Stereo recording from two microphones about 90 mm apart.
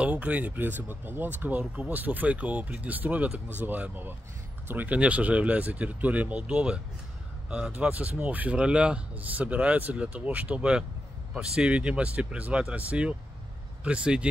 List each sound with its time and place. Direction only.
0.0 s speech: 15° right (ahead or behind)